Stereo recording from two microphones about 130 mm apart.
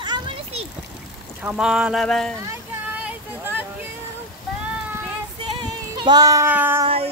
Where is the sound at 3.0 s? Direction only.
15° right (ahead or behind).